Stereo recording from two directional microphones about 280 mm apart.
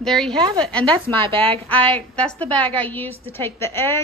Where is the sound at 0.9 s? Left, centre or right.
Centre.